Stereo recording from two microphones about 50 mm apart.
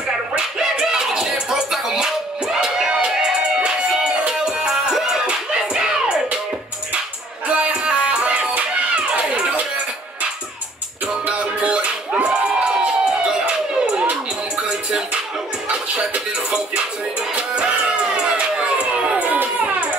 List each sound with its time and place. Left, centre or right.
0.4 s music: centre
7.4 s music: right
11.1 s music: right
12.3 s crowd: centre
15.7 s music: right